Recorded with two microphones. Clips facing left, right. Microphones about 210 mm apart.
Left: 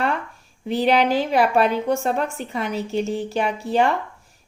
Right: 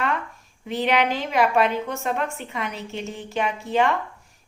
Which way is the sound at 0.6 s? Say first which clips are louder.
Left 4 dB; 35° left (ahead or behind).